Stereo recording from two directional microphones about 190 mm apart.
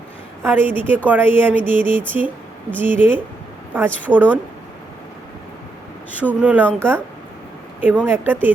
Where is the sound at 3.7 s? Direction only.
10° right (ahead or behind).